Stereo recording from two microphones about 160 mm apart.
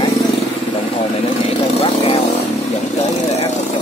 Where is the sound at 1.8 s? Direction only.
40° left (ahead or behind).